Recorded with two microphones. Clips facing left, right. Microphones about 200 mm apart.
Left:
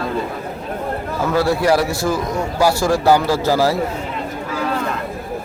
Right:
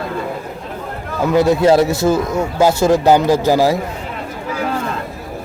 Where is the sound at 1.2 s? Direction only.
20° right (ahead or behind).